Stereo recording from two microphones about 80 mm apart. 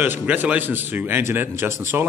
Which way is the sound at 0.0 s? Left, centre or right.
Right.